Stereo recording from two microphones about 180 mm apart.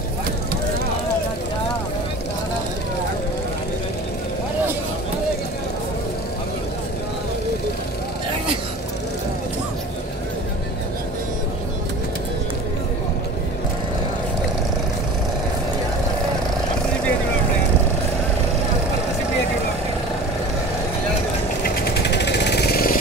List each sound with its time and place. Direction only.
21.8 s vehicle: 70° left (ahead or behind)